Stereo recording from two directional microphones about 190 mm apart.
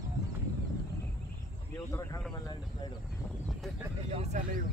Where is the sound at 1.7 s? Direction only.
15° left (ahead or behind).